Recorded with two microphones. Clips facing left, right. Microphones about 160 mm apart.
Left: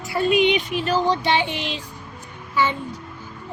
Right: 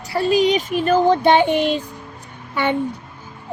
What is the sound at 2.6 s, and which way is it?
Speech, 60° right (ahead or behind).